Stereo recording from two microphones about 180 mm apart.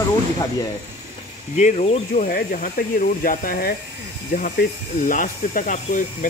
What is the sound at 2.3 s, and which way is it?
Speech, 55° left (ahead or behind).